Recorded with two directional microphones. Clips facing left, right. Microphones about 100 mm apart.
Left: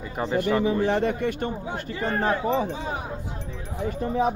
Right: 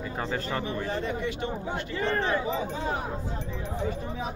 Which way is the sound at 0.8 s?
60° left (ahead or behind).